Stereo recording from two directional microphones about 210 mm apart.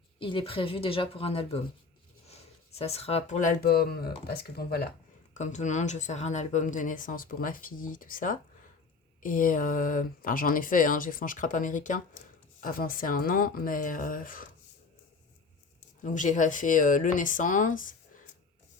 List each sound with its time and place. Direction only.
0.2 s speech: 25° left (ahead or behind); by 4.9 s 50° left (ahead or behind)
5.3 s speech: 35° left (ahead or behind)
16.0 s speech: 35° left (ahead or behind)